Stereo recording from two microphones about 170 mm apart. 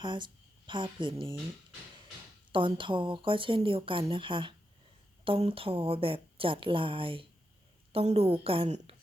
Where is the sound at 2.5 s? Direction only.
30° right (ahead or behind).